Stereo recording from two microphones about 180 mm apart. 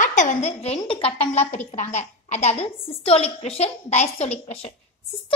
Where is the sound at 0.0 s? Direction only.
45° left (ahead or behind).